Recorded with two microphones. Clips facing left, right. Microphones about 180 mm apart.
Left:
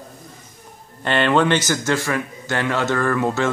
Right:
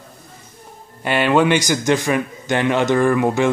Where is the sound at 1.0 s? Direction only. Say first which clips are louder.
Right 2 dB; 10° right (ahead or behind).